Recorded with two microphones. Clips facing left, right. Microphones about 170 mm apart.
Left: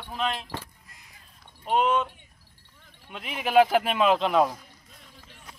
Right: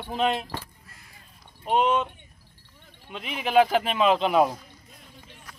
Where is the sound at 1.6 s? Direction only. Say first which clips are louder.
Right 1 dB; centre (ahead or behind).